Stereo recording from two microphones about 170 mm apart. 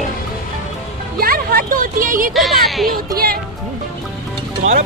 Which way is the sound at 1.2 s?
60° right (ahead or behind).